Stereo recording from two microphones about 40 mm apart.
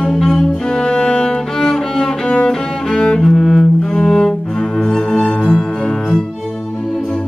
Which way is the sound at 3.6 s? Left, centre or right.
Left.